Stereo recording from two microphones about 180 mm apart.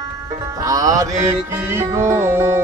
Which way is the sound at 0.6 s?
20° right (ahead or behind).